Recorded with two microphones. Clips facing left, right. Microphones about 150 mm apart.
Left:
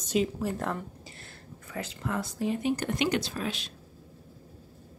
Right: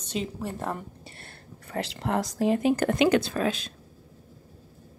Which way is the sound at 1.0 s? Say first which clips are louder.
Right 1 dB; 60° right (ahead or behind).